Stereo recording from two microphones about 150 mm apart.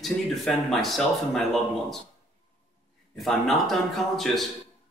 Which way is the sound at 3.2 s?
Centre (ahead or behind).